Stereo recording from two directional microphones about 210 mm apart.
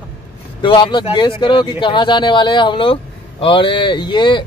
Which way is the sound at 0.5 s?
20° left (ahead or behind).